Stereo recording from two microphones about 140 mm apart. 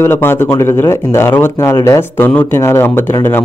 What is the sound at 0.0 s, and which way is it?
Speech, 15° left (ahead or behind).